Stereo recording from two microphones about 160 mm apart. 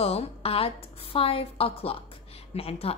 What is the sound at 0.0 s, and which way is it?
A woman's voice, 40° left (ahead or behind).